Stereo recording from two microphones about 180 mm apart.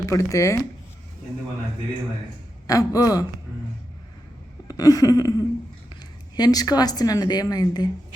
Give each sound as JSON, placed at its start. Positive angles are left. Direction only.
{"t": 0.0, "sound": "speech", "side_deg": 15}
{"t": 2.6, "sound": "speech", "side_deg": 20}
{"t": 4.7, "sound": "a woman's voice", "side_deg": 20}